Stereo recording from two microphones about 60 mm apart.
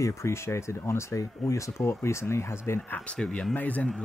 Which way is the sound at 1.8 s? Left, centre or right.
Left.